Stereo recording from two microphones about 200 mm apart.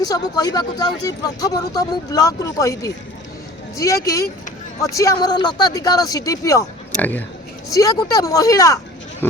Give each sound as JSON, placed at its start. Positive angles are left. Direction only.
{"t": 0.0, "sound": "speech", "side_deg": 20}